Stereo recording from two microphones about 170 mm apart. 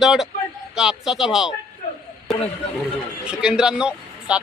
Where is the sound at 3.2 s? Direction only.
5° right (ahead or behind).